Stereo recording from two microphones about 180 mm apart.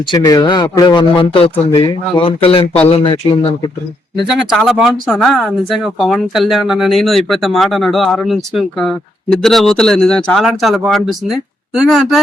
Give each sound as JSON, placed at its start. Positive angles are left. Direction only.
{"t": 0.1, "sound": "speech", "side_deg": 25}
{"t": 4.3, "sound": "speech", "side_deg": 0}